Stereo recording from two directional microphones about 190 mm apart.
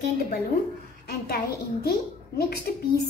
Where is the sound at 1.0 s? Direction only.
55° left (ahead or behind).